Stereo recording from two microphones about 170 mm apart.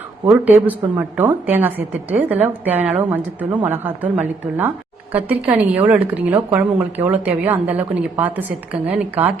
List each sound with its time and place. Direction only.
0.3 s a woman's voice: 10° right (ahead or behind)